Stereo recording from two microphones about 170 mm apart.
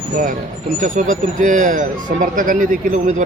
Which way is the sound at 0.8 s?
50° right (ahead or behind).